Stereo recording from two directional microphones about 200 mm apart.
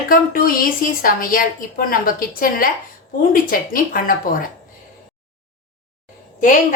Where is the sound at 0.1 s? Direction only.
45° left (ahead or behind).